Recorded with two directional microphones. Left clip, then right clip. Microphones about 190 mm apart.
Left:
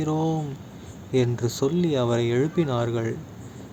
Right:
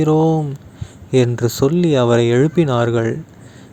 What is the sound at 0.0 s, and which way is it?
Speech, 40° right (ahead or behind).